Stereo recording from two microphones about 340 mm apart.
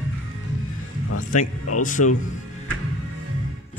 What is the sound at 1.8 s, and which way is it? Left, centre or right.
Speech, left.